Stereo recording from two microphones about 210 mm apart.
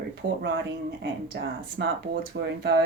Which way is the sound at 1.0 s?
55° right (ahead or behind).